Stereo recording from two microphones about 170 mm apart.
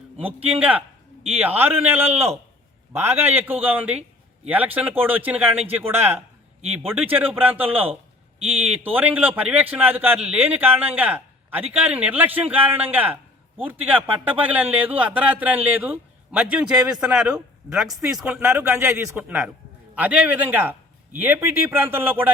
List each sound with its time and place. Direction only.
0.3 s a man's voice: 35° right (ahead or behind)
0.6 s a man's voice: 10° right (ahead or behind)